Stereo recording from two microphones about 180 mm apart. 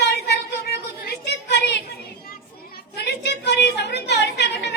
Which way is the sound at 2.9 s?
70° left (ahead or behind).